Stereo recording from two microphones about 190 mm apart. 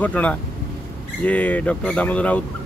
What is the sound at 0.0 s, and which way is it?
Speech, 5° left (ahead or behind).